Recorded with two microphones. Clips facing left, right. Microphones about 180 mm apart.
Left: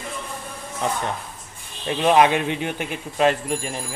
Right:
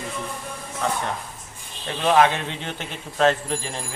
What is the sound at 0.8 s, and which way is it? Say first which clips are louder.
Speech: left 1 dB; 15° left (ahead or behind).